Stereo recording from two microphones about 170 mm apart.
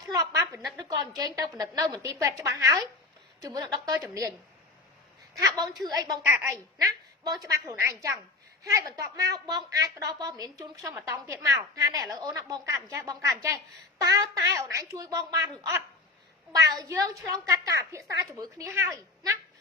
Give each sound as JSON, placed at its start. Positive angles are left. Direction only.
{"t": 0.1, "sound": "a sound", "side_deg": -15}
{"t": 0.8, "sound": "a woman's voice", "side_deg": -20}
{"t": 5.4, "sound": "a woman's voice", "side_deg": -25}